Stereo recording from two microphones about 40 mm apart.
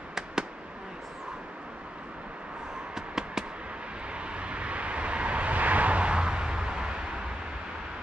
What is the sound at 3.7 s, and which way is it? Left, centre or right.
Vehicle, right.